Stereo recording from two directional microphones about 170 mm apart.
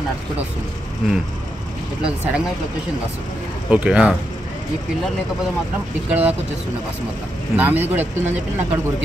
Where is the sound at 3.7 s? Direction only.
5° right (ahead or behind).